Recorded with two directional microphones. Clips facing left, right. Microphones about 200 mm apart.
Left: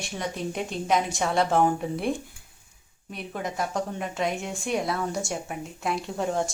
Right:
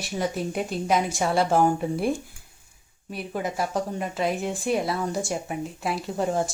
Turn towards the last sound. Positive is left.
turn(degrees=0)  # may be behind; listen again after turning